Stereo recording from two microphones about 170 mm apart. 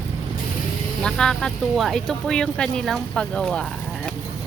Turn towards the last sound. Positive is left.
turn(degrees=5)  # may be behind; listen again after turning